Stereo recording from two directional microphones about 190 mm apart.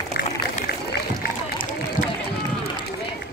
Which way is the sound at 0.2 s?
55° left (ahead or behind).